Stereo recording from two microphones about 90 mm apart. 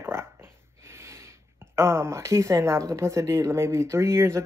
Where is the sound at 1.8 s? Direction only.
30° right (ahead or behind).